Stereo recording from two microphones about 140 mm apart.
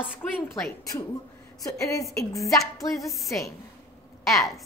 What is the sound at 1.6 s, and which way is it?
A woman's voice, 25° left (ahead or behind).